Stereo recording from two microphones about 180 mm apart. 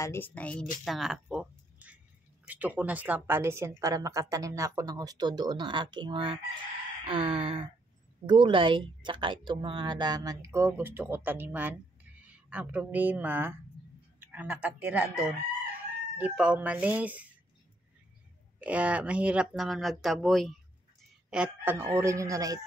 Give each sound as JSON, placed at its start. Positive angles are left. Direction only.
{"t": 0.0, "sound": "a woman's voice", "side_deg": 10}
{"t": 18.6, "sound": "speech", "side_deg": -5}